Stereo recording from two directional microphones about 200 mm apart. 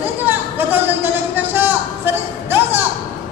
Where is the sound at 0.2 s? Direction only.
10° right (ahead or behind).